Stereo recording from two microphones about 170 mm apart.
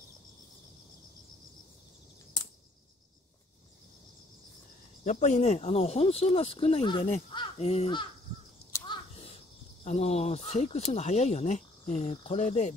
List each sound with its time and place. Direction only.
5.0 s speech: 45° left (ahead or behind)
8.8 s crow: 25° left (ahead or behind)
9.8 s speech: 40° left (ahead or behind)